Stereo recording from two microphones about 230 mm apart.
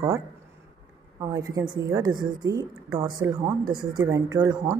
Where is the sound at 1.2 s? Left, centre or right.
Centre.